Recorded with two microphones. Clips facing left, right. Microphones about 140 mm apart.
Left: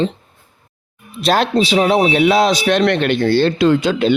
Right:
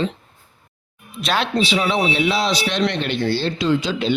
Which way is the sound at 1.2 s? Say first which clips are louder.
Left 6 dB; 40° left (ahead or behind).